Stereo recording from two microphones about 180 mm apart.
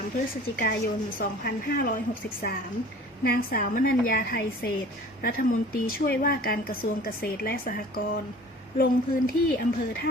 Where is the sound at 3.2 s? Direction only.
60° left (ahead or behind).